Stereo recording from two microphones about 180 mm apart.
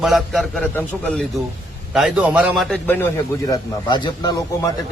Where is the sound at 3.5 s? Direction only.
25° left (ahead or behind).